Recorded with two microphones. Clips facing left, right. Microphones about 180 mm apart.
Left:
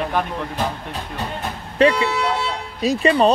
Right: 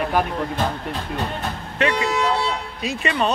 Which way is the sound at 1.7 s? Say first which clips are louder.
Left 5 dB; 30° left (ahead or behind).